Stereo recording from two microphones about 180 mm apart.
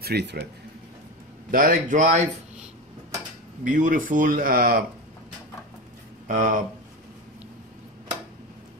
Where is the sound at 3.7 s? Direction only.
45° right (ahead or behind).